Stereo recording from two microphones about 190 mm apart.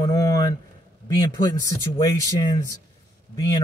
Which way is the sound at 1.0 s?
20° left (ahead or behind).